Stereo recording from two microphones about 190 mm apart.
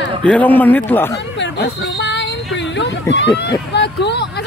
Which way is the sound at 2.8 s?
65° left (ahead or behind).